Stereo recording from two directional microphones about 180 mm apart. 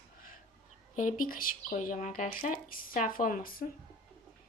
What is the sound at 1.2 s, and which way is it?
Speech, 50° left (ahead or behind).